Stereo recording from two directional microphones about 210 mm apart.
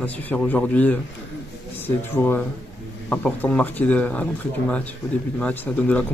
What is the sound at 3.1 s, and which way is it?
Speech, 5° left (ahead or behind).